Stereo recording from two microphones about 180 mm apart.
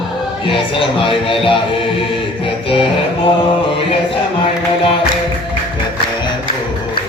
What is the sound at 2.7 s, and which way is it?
Music, 30° left (ahead or behind).